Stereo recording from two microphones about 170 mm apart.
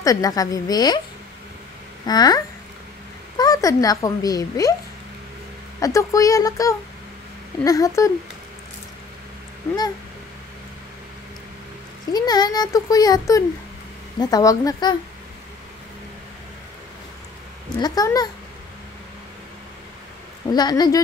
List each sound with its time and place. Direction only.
0.0 s a child's voice: 20° left (ahead or behind)
2.0 s a child's voice: 25° left (ahead or behind)
5.8 s a child's voice: 20° left (ahead or behind)
9.6 s speech: 15° left (ahead or behind)
12.1 s a child's voice: 25° left (ahead or behind)
17.7 s a child's voice: 20° left (ahead or behind)
20.5 s a child's voice: 25° left (ahead or behind)